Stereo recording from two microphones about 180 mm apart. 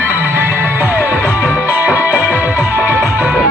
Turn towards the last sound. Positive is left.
turn(degrees=-10)  # may be behind; listen again after turning